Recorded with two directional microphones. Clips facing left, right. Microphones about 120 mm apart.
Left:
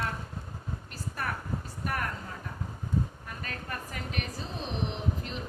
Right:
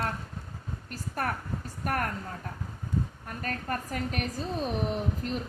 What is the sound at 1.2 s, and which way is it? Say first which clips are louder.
Speech: right 3 dB; 45° right (ahead or behind).